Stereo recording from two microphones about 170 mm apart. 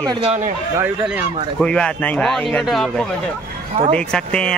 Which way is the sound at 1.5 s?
5° left (ahead or behind).